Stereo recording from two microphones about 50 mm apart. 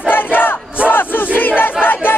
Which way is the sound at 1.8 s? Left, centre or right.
Left.